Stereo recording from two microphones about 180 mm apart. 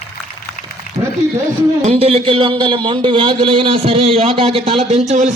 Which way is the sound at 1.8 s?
35° right (ahead or behind).